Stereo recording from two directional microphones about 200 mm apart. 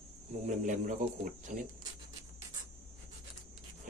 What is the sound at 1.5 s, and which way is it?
Speech, 40° right (ahead or behind).